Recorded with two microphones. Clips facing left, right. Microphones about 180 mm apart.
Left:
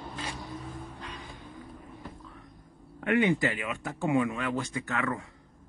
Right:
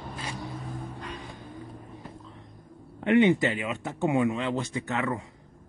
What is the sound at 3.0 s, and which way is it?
Speech, 20° right (ahead or behind).